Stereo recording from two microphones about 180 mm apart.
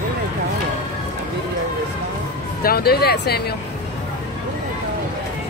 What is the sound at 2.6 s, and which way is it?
Speech, 60° left (ahead or behind).